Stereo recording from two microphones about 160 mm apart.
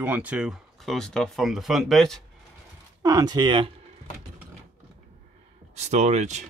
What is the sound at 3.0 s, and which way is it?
Speech, 25° right (ahead or behind).